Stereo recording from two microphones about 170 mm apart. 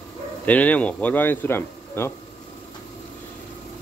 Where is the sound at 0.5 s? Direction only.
10° left (ahead or behind).